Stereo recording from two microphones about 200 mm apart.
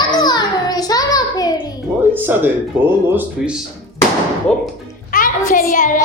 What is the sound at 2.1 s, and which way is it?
Speech, 10° right (ahead or behind).